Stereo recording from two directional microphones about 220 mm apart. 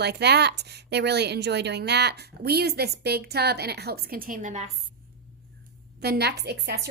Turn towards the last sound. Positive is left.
turn(degrees=-50)  # may be behind; listen again after turning